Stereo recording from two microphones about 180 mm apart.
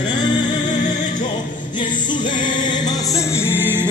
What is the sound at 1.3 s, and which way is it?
Music, 25° left (ahead or behind).